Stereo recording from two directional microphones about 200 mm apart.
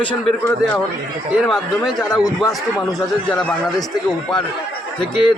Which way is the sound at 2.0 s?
20° left (ahead or behind).